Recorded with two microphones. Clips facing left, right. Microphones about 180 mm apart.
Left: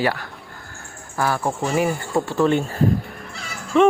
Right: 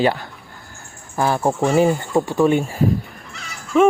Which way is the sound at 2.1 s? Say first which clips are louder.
Right 1 dB; 15° right (ahead or behind).